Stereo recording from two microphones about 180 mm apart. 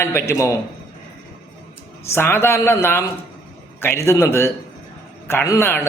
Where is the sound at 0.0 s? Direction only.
15° left (ahead or behind).